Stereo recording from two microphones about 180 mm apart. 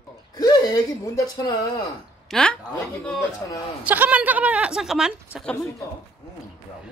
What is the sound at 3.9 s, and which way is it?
A woman's voice, 10° right (ahead or behind).